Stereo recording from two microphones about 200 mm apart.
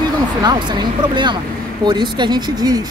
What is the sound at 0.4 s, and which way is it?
Speech, 20° right (ahead or behind).